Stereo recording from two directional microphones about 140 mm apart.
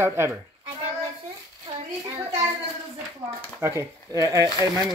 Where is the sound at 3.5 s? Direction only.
20° right (ahead or behind).